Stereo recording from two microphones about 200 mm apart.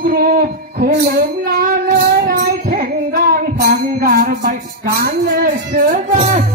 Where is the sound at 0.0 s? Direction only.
45° right (ahead or behind).